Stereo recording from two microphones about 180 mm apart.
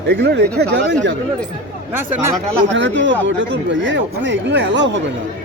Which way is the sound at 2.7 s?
90° right.